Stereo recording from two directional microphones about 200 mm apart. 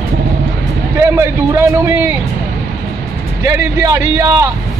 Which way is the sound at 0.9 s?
15° right (ahead or behind).